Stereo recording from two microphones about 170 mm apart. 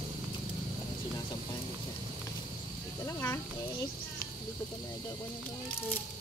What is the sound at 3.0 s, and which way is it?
Snake, 15° left (ahead or behind).